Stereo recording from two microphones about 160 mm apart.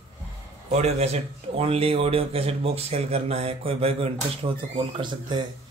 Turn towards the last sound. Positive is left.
turn(degrees=-30)  # may be behind; listen again after turning